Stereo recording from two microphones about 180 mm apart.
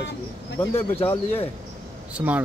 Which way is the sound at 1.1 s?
30° left (ahead or behind).